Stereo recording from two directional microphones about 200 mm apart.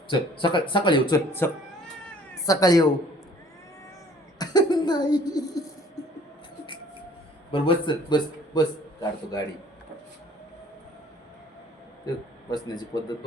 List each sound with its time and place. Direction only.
0.1 s speech: 25° left (ahead or behind)
1.4 s speech: 10° left (ahead or behind)
2.0 s cat: 15° left (ahead or behind)
4.4 s speech: 20° left (ahead or behind)
7.5 s a man's voice: 25° left (ahead or behind)
12.5 s speech: 20° left (ahead or behind)